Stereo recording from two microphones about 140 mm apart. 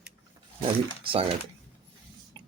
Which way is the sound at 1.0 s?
40° right (ahead or behind).